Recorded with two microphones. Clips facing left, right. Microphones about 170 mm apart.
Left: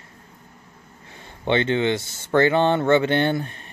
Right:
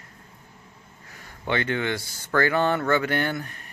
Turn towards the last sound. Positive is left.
turn(degrees=25)  # may be behind; listen again after turning